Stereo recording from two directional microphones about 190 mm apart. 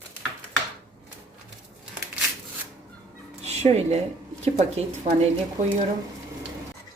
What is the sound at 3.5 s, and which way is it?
Speech, 35° right (ahead or behind).